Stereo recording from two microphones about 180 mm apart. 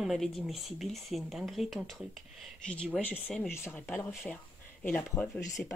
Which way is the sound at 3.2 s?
5° left (ahead or behind).